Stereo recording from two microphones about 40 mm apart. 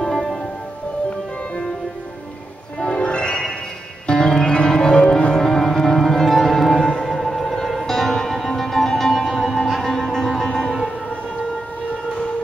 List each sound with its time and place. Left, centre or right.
0.0 s music: centre
2.8 s music: left; by 10.9 s centre